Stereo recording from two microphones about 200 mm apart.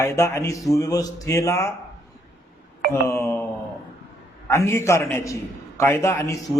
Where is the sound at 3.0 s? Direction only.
15° left (ahead or behind).